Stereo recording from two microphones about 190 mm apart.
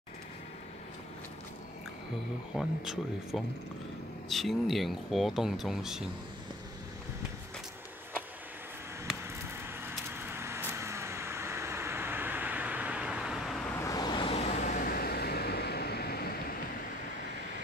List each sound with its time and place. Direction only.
2.5 s speech: centre (ahead or behind)
9.8 s vehicle: 10° right (ahead or behind)
13.7 s vehicle: 20° left (ahead or behind); by 16.3 s 55° left (ahead or behind)